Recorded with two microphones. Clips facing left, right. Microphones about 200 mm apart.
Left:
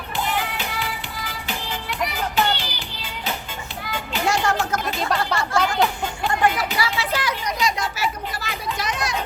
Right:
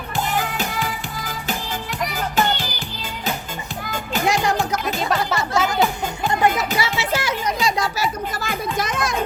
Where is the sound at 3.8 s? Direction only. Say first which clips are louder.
Right 2 dB; 45° right (ahead or behind).